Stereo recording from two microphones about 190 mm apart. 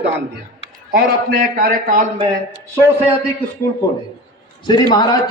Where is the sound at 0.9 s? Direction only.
45° right (ahead or behind).